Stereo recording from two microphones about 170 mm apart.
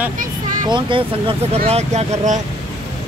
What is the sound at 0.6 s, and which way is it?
Speech, 30° right (ahead or behind).